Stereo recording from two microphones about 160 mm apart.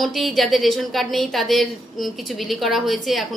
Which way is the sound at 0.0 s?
Centre (ahead or behind).